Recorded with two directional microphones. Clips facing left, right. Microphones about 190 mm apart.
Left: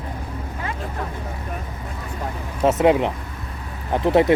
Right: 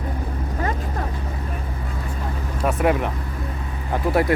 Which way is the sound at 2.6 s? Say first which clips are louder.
Left 4 dB; 20° left (ahead or behind).